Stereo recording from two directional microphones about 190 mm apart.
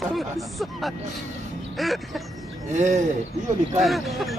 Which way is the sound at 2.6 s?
40° right (ahead or behind).